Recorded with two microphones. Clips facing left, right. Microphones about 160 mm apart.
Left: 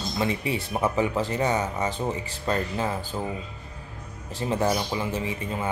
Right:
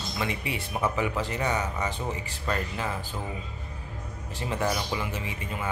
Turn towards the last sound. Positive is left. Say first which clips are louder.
# left 4 dB
turn(degrees=30)  # may be behind; listen again after turning